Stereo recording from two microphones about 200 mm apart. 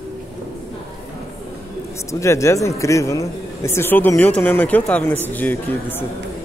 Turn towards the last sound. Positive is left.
turn(degrees=10)  # may be behind; listen again after turning